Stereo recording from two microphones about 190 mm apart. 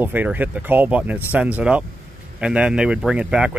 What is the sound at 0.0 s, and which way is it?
Speech, 10° right (ahead or behind).